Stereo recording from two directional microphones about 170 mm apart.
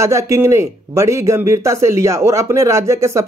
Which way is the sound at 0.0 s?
15° right (ahead or behind).